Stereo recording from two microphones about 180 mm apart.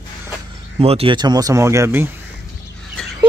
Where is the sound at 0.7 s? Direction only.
30° right (ahead or behind); by 2.0 s 15° right (ahead or behind).